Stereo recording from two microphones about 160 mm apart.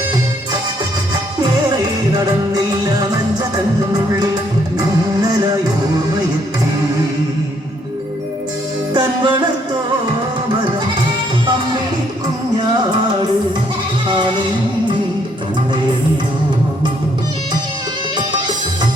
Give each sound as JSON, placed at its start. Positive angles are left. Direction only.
{"t": 2.1, "sound": "music", "side_deg": -25}
{"t": 8.9, "sound": "music", "side_deg": -30}
{"t": 14.1, "sound": "music", "side_deg": -30}